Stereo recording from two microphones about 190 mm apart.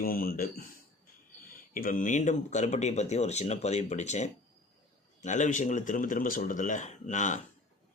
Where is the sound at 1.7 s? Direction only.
45° left (ahead or behind).